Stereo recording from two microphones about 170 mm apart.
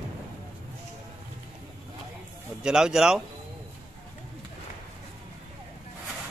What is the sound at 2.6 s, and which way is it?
Speech, 5° right (ahead or behind).